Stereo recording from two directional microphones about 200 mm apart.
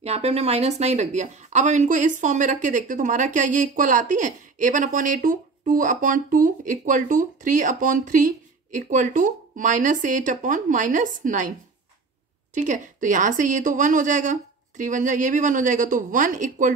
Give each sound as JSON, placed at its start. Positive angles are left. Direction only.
{"t": 0.0, "sound": "a woman's voice", "side_deg": -30}
{"t": 12.5, "sound": "a woman's voice", "side_deg": -40}